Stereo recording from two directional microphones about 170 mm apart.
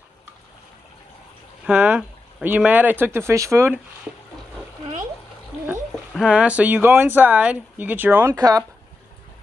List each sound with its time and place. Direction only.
1.7 s speech: 10° right (ahead or behind)
6.1 s speech: 5° right (ahead or behind)